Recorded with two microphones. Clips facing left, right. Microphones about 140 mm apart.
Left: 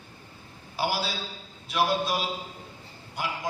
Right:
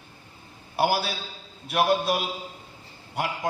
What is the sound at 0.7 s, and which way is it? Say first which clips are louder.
A man's voice: right 5 dB; 60° right (ahead or behind).